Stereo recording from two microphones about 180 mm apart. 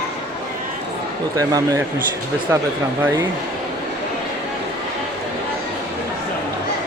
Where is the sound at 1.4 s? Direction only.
20° right (ahead or behind).